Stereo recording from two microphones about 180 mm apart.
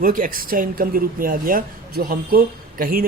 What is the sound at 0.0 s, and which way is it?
A man's voice, 50° right (ahead or behind).